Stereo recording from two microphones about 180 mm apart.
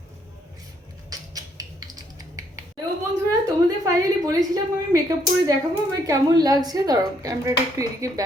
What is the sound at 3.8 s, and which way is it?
Speech, 20° right (ahead or behind).